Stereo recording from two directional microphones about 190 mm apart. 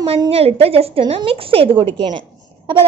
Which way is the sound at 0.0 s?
30° right (ahead or behind).